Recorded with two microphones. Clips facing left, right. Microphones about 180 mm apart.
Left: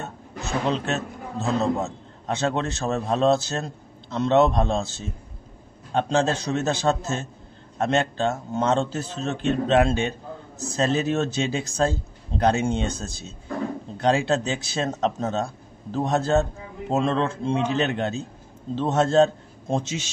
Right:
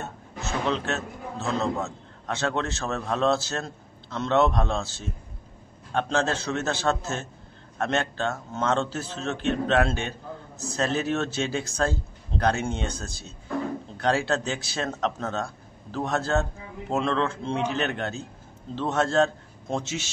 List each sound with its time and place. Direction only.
0.4 s a man's voice: 15° left (ahead or behind)